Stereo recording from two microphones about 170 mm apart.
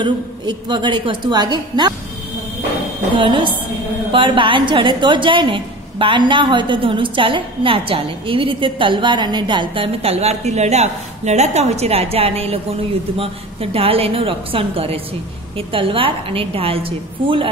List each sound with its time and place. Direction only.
0.0 s a woman's voice: 25° right (ahead or behind)
3.2 s a woman's voice: 30° right (ahead or behind)